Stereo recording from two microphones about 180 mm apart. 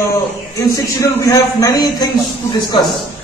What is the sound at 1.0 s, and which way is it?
A man's voice, 15° left (ahead or behind).